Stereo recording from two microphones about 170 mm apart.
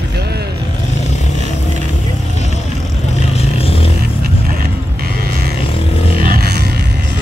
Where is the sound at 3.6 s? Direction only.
35° left (ahead or behind).